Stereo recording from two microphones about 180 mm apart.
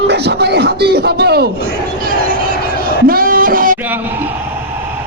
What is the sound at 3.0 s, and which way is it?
Music, 50° right (ahead or behind).